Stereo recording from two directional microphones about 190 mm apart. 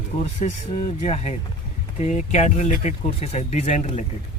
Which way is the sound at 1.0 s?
35° left (ahead or behind).